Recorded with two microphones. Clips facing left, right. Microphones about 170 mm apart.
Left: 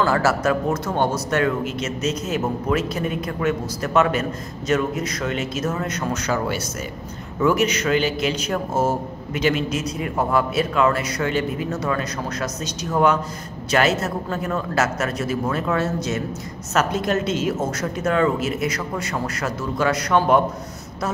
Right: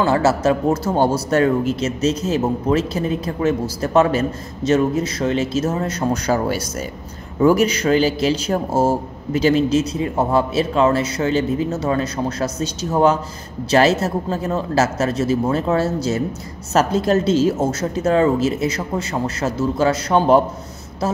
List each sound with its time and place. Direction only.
0.0 s speech: 25° right (ahead or behind)